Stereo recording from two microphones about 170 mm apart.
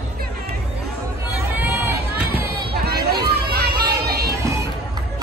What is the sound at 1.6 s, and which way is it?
Run, 15° right (ahead or behind).